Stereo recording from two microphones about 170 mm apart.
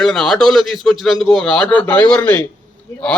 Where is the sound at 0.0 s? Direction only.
5° left (ahead or behind).